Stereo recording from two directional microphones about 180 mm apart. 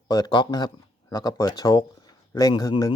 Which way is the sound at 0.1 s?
25° left (ahead or behind).